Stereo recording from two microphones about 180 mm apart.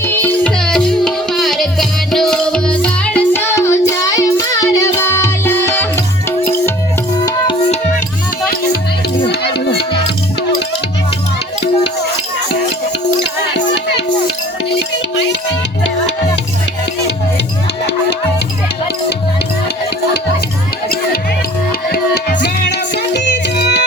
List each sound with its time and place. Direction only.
0.0 s music: 10° left (ahead or behind)
9.3 s music: 65° left (ahead or behind)
15.1 s music: 85° left
21.9 s music: 60° left (ahead or behind)